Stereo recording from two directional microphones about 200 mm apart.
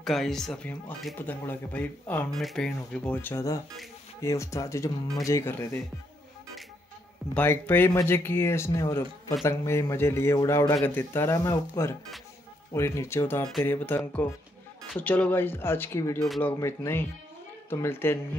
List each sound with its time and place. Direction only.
0.0 s a man's voice: centre (ahead or behind)
7.3 s a man's voice: 10° left (ahead or behind)